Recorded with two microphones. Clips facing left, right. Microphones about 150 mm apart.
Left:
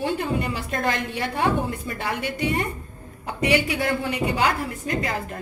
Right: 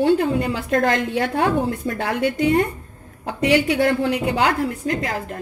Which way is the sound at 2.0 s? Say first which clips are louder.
Right 6 dB; 75° right (ahead or behind).